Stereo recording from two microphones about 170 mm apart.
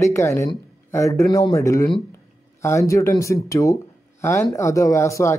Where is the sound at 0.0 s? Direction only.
15° left (ahead or behind).